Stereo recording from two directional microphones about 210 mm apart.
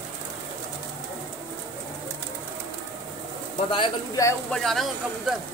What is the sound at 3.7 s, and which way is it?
Speech, 20° left (ahead or behind).